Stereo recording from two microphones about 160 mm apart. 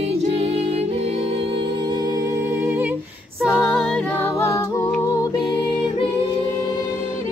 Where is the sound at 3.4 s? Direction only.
Centre (ahead or behind).